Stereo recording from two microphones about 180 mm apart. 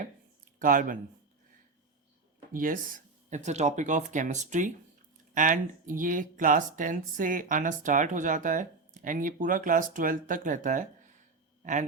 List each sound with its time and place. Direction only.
0.6 s speech: 50° right (ahead or behind)
2.5 s speech: 50° right (ahead or behind)